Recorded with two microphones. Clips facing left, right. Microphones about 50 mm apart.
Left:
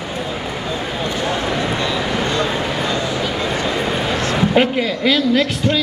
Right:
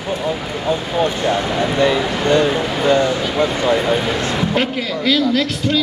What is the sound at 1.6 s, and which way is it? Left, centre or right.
Speech, right.